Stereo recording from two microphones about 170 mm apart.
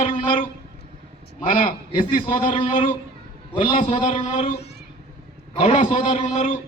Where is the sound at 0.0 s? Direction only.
45° left (ahead or behind).